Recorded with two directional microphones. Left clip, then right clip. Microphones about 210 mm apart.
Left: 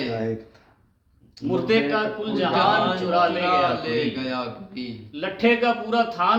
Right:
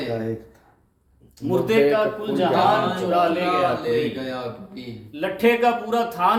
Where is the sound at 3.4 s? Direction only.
30° left (ahead or behind).